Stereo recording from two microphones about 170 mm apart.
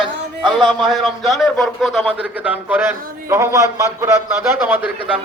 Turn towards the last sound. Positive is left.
turn(degrees=-10)  # may be behind; listen again after turning